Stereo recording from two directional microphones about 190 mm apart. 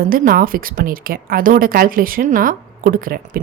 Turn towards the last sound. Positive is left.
turn(degrees=-50)  # may be behind; listen again after turning